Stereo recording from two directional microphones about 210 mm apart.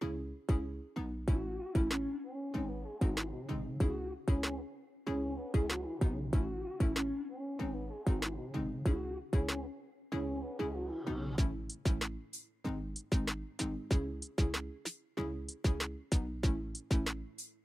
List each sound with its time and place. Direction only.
0.0 s music: centre (ahead or behind)